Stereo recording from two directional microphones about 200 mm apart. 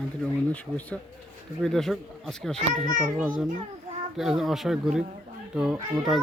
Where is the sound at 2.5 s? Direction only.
40° right (ahead or behind).